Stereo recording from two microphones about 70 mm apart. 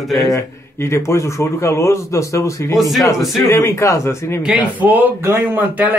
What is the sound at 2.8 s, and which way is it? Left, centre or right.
Speech, centre.